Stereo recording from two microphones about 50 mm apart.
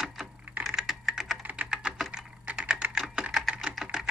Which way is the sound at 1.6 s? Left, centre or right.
Centre.